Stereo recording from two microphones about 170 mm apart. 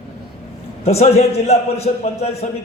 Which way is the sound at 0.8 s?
40° left (ahead or behind).